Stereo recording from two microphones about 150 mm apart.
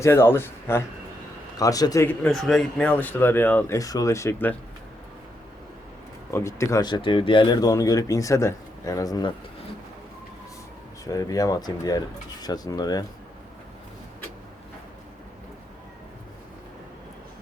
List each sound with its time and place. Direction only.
0.0 s speech: 15° left (ahead or behind)
2.0 s speech: 5° left (ahead or behind)
6.3 s speech: 20° left (ahead or behind)
11.0 s speech: 25° left (ahead or behind)